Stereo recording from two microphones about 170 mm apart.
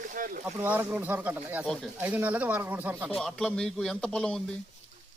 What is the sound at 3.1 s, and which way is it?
Speech, centre (ahead or behind).